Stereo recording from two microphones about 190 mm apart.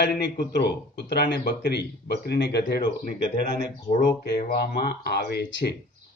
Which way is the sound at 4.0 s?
55° left (ahead or behind).